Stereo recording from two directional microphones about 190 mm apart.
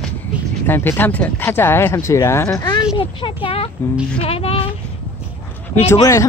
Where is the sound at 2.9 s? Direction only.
25° left (ahead or behind).